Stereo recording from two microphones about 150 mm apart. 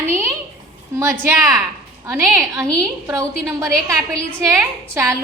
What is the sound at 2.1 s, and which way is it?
A woman's voice, 20° right (ahead or behind).